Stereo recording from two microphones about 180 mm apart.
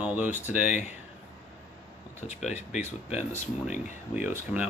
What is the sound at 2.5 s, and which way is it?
Speech, 40° left (ahead or behind).